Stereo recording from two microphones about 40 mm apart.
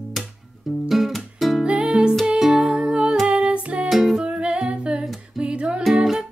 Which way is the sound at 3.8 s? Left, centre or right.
Centre.